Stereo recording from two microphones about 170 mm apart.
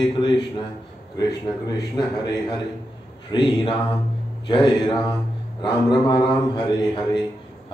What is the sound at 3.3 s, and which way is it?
Speech, 25° left (ahead or behind).